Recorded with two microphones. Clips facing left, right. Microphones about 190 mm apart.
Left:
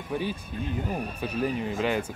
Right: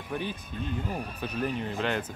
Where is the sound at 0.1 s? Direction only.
10° left (ahead or behind).